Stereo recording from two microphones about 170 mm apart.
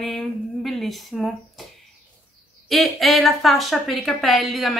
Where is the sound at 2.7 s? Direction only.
Centre (ahead or behind).